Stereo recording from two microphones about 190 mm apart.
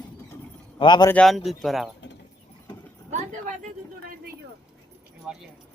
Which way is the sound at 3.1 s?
40° right (ahead or behind).